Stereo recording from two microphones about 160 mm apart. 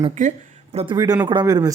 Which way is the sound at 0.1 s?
50° right (ahead or behind).